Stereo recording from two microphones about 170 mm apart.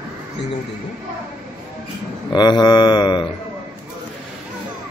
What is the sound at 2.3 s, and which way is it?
Speech, 25° left (ahead or behind).